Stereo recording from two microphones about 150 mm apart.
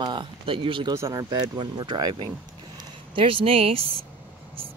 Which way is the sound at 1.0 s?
20° right (ahead or behind).